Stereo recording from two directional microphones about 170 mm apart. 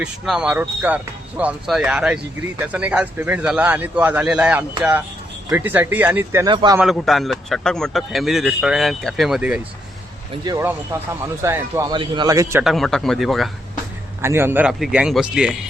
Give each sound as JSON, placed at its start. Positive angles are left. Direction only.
{"t": 0.0, "sound": "a man's voice", "side_deg": -5}
{"t": 6.5, "sound": "a man's voice", "side_deg": -30}
{"t": 6.7, "sound": "a man's voice", "side_deg": 0}
{"t": 10.4, "sound": "a man's voice", "side_deg": -20}
{"t": 11.9, "sound": "a man's voice", "side_deg": -25}
{"t": 12.6, "sound": "a man's voice", "side_deg": 0}
{"t": 14.2, "sound": "a man's voice", "side_deg": -15}